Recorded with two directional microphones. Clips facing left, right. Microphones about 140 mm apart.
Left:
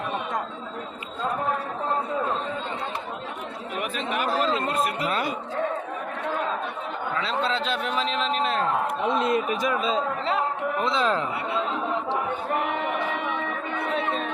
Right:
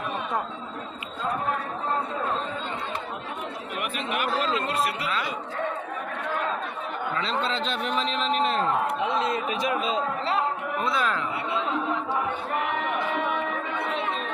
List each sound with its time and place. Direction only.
3.8 s speech: 35° left (ahead or behind)
7.2 s a man's voice: 5° left (ahead or behind)
9.0 s a man's voice: 55° left (ahead or behind)
10.8 s speech: 25° left (ahead or behind)